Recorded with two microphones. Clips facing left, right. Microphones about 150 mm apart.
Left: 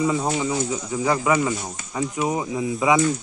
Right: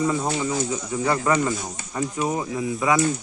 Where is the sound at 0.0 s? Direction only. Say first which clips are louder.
Left 1 dB; 5° left (ahead or behind).